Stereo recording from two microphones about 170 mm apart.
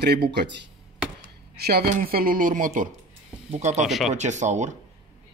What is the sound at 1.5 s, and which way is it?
Speech, 65° right (ahead or behind).